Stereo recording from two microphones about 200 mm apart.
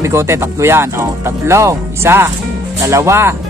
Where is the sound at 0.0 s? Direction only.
15° right (ahead or behind).